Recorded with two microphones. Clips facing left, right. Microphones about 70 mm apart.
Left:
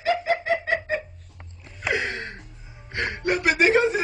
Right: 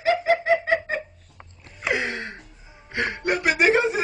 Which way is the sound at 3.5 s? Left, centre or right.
Right.